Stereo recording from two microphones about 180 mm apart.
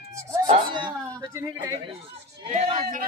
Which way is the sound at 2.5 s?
40° right (ahead or behind).